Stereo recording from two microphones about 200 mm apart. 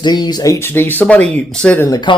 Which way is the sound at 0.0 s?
20° left (ahead or behind).